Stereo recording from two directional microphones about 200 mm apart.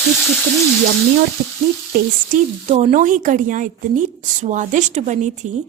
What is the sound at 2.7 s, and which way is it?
Speech, 35° right (ahead or behind).